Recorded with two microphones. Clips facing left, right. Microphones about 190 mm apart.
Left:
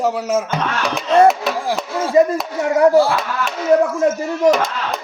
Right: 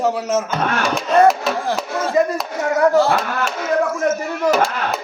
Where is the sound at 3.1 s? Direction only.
55° right (ahead or behind).